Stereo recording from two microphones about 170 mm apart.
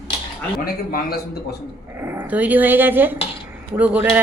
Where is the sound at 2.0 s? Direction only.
10° right (ahead or behind).